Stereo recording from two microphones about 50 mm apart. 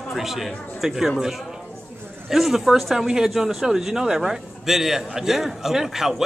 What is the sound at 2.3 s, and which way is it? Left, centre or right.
A man's voice, centre.